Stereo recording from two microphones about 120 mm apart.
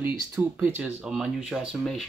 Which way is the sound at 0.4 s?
15° right (ahead or behind).